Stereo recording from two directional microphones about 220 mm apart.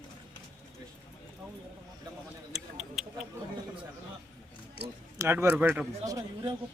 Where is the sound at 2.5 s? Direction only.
Centre (ahead or behind).